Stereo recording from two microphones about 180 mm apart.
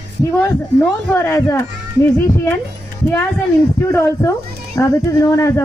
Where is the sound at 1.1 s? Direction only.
15° left (ahead or behind).